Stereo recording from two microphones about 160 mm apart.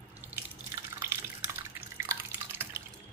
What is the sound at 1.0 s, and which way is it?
Drip, 15° right (ahead or behind).